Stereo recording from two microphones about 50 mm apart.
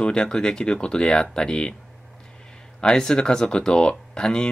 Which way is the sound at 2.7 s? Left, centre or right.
Centre.